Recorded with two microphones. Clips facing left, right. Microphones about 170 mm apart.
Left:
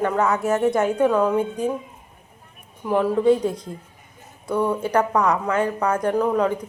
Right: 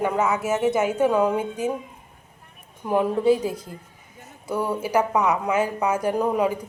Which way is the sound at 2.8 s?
15° right (ahead or behind).